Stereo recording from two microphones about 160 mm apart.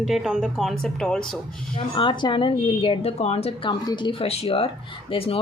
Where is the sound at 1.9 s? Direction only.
30° left (ahead or behind).